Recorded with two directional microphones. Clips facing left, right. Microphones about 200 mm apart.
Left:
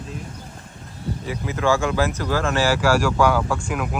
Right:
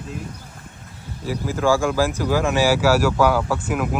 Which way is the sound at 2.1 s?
10° right (ahead or behind).